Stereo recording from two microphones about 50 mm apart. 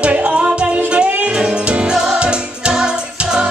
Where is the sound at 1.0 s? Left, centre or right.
Right.